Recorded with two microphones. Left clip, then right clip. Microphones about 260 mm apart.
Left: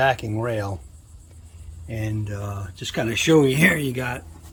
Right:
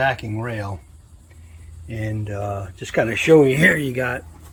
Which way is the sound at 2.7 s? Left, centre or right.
Centre.